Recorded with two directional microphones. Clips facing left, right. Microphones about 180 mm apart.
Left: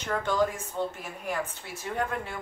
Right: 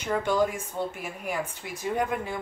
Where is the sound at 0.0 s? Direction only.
10° right (ahead or behind).